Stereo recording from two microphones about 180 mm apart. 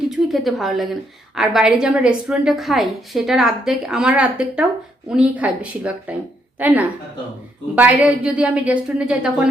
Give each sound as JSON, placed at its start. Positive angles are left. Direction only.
{"t": 0.1, "sound": "a woman's voice", "side_deg": 0}